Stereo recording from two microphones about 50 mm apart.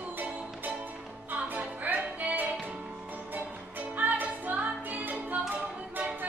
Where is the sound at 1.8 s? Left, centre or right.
Right.